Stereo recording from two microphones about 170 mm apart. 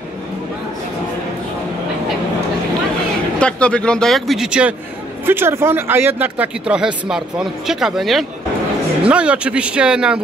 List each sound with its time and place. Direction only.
3.3 s speech: 5° left (ahead or behind)